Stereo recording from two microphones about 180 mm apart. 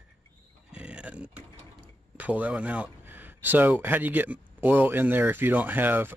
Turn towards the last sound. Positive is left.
turn(degrees=-10)  # may be behind; listen again after turning